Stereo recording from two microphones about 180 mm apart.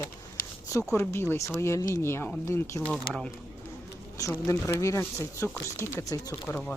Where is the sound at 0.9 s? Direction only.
15° left (ahead or behind).